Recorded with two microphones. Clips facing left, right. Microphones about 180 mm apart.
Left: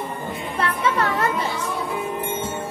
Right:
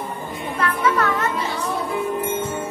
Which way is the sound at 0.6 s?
30° left (ahead or behind).